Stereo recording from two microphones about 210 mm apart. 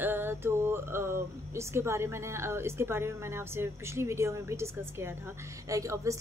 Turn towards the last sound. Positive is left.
turn(degrees=-15)  # may be behind; listen again after turning